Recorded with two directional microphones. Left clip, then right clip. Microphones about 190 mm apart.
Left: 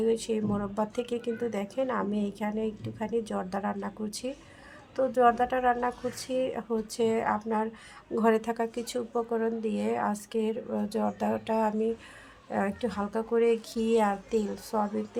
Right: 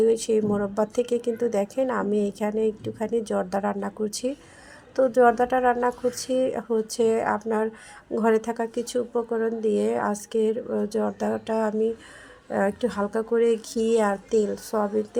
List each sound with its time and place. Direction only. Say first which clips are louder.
0.0 s a woman's voice: right 7 dB; 20° right (ahead or behind)